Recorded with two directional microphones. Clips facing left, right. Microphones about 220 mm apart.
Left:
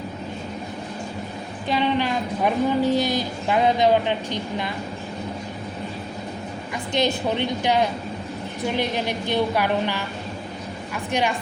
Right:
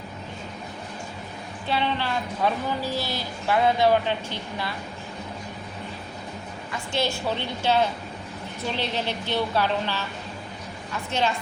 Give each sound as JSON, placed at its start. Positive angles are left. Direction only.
{"t": 1.6, "sound": "a woman's voice", "side_deg": 15}
{"t": 6.9, "sound": "a woman's voice", "side_deg": 20}
{"t": 11.1, "sound": "a woman's voice", "side_deg": 15}